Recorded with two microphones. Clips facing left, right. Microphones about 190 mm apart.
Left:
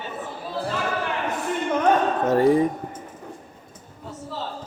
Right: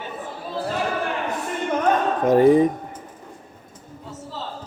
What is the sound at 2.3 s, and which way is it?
Speech, 20° right (ahead or behind).